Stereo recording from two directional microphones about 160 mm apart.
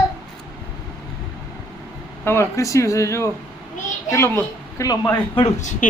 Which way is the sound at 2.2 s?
15° left (ahead or behind).